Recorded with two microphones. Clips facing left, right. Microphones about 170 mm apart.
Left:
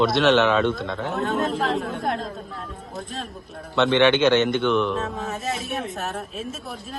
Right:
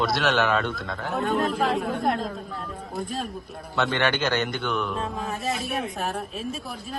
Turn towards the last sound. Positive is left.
turn(degrees=0)  # may be behind; listen again after turning